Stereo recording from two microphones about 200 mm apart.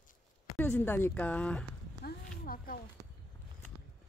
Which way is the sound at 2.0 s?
45° left (ahead or behind).